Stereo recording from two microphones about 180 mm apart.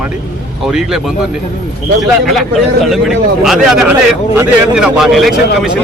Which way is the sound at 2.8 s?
Centre (ahead or behind).